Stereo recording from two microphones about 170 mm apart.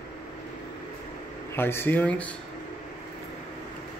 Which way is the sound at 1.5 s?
15° left (ahead or behind).